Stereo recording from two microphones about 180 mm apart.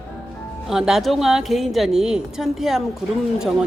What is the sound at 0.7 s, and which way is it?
A woman's voice, centre (ahead or behind).